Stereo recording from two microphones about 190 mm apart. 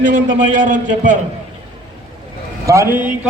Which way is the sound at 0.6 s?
40° right (ahead or behind).